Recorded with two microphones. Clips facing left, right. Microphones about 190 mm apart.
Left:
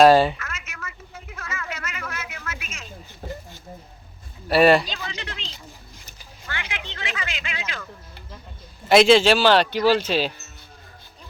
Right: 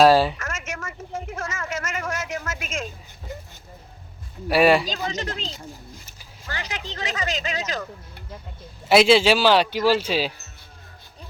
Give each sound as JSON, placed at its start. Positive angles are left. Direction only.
{"t": 0.0, "sound": "speech", "side_deg": 0}
{"t": 0.4, "sound": "a sound", "side_deg": -45}
{"t": 4.4, "sound": "speech", "side_deg": -10}
{"t": 4.9, "sound": "speech", "side_deg": -40}
{"t": 8.9, "sound": "speech", "side_deg": -5}